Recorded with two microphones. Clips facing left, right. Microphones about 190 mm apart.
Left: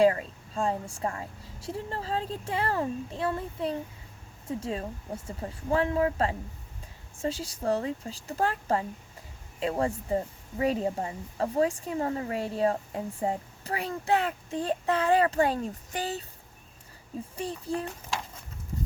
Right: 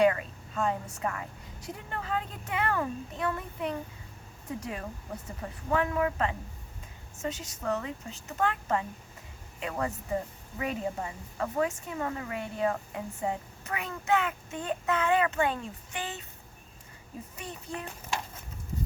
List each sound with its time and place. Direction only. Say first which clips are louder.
0.0 s speech: left 2 dB; 30° left (ahead or behind)
17.3 s speech: left 8 dB; 35° left (ahead or behind)